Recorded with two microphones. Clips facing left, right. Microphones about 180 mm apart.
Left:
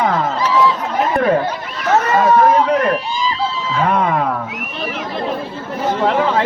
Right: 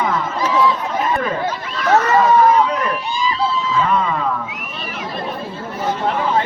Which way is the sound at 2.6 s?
55° left (ahead or behind).